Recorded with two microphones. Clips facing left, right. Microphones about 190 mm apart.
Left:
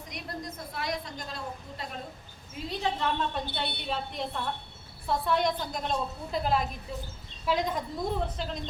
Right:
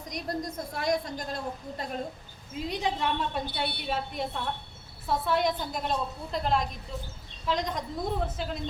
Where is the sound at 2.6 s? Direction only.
15° right (ahead or behind); by 7.9 s 5° left (ahead or behind).